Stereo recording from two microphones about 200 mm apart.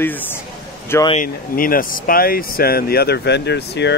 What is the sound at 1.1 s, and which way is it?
Speech, 40° left (ahead or behind).